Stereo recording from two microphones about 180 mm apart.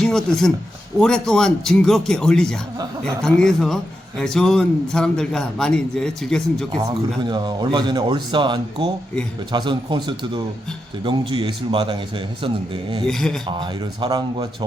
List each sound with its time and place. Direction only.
0.0 s a man's voice: 5° left (ahead or behind)
6.7 s speech: 25° right (ahead or behind)
13.1 s a man's voice: 5° left (ahead or behind)
13.5 s speech: 25° right (ahead or behind)